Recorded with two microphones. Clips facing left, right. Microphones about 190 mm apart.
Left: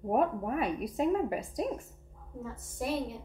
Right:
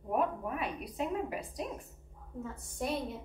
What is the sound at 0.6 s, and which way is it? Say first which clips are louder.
Speech: left 7 dB; 45° left (ahead or behind).